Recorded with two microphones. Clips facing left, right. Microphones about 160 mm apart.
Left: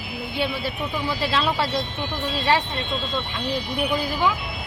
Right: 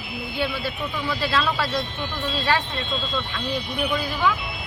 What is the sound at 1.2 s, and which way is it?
Speech, 25° left (ahead or behind).